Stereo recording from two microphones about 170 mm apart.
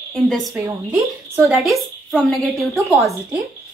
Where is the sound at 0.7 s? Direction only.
15° right (ahead or behind).